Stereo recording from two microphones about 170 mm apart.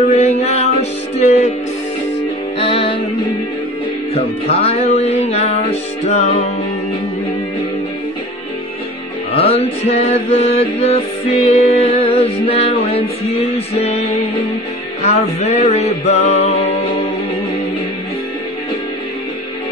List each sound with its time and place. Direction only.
0.1 s music: 40° left (ahead or behind)
2.6 s music: 30° left (ahead or behind)
4.1 s music: 35° left (ahead or behind)
9.3 s mantra: 35° left (ahead or behind)
11.3 s music: 40° left (ahead or behind)